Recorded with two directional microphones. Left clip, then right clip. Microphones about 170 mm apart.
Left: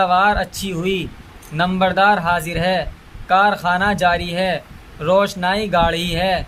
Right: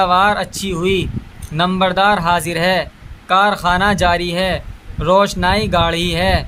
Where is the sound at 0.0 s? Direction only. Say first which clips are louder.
Right 2 dB; 25° right (ahead or behind).